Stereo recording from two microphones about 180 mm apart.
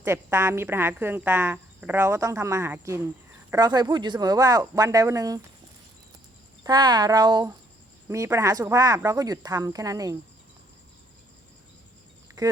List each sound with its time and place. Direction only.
0.0 s speech: 15° right (ahead or behind)
6.7 s speech: 25° right (ahead or behind)
12.4 s a sound: 20° right (ahead or behind)